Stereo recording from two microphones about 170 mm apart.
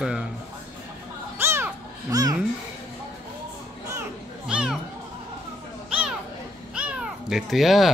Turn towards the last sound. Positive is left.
turn(degrees=0)  # may be behind; listen again after turning